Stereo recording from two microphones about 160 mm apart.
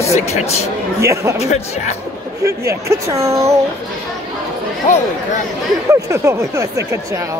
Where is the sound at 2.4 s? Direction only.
20° right (ahead or behind).